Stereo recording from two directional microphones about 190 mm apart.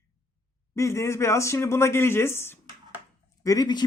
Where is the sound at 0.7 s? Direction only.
15° left (ahead or behind).